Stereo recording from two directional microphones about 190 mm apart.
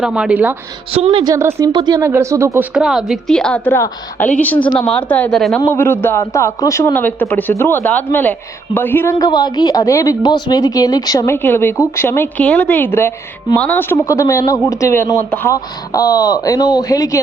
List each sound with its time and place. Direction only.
0.0 s a woman's voice: 5° right (ahead or behind)
0.9 s a woman's voice: 30° right (ahead or behind)
1.3 s speech: 15° right (ahead or behind)
2.7 s a woman's voice: centre (ahead or behind)
5.5 s a man's voice: 10° left (ahead or behind)